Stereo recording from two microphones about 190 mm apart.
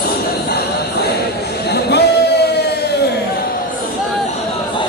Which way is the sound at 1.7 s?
60° left (ahead or behind).